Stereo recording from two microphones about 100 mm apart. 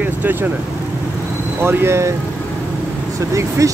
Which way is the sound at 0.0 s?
20° right (ahead or behind).